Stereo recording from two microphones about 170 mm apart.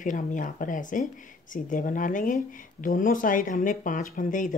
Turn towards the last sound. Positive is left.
turn(degrees=50)  # may be behind; listen again after turning